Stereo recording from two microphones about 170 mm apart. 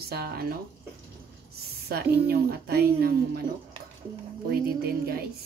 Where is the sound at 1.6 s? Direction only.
65° right (ahead or behind).